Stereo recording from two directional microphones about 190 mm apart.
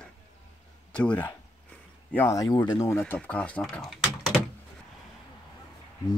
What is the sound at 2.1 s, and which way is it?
Speech, 15° left (ahead or behind).